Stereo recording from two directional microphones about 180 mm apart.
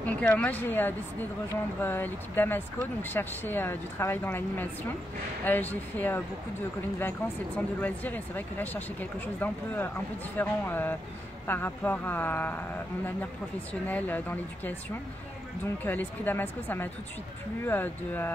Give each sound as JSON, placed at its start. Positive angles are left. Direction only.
{"t": 0.0, "sound": "speech", "side_deg": 5}
{"t": 13.8, "sound": "speech", "side_deg": 10}